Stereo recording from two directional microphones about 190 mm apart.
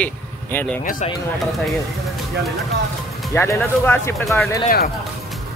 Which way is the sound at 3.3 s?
10° left (ahead or behind).